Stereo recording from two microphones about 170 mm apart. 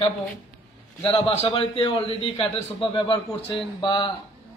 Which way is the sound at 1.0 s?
35° left (ahead or behind).